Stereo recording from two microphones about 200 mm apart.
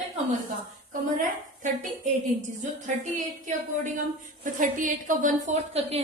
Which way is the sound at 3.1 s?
40° right (ahead or behind).